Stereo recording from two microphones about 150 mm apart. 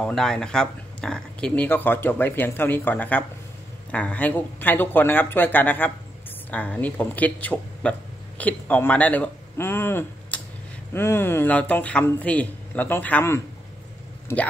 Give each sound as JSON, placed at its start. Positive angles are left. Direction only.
{"t": 0.0, "sound": "a man's voice", "side_deg": 5}